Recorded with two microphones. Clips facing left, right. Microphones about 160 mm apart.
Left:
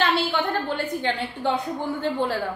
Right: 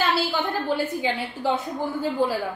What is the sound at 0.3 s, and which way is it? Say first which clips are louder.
A woman's voice: even; 5° right (ahead or behind).